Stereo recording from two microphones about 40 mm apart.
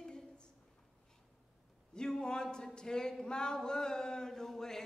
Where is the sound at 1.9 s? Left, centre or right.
Centre.